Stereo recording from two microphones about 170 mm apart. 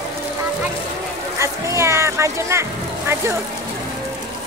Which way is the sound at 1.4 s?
15° right (ahead or behind).